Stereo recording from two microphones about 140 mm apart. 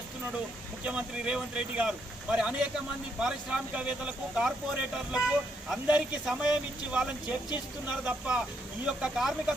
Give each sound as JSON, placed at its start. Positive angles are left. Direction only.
{"t": 0.9, "sound": "speech", "side_deg": -5}